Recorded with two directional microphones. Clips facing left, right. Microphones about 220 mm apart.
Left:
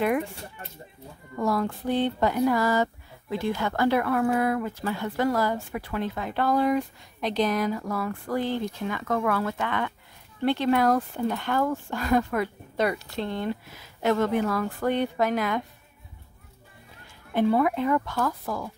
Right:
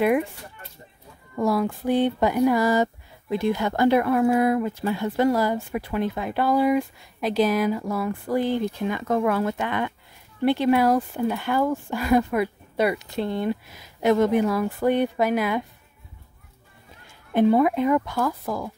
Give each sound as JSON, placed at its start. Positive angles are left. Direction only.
{"t": 1.3, "sound": "speech", "side_deg": -10}
{"t": 17.3, "sound": "speech", "side_deg": -20}